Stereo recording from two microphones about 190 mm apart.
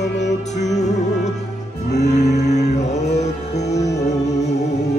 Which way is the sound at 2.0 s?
35° left (ahead or behind).